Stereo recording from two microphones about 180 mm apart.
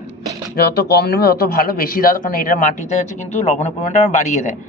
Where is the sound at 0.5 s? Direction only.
60° left (ahead or behind); by 4.4 s 45° left (ahead or behind).